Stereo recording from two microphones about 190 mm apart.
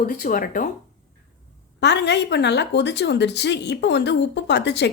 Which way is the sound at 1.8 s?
65° left (ahead or behind).